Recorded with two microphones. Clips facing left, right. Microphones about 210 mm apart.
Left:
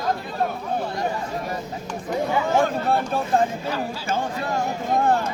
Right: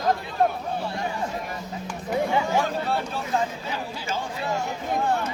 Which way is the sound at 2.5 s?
50° left (ahead or behind).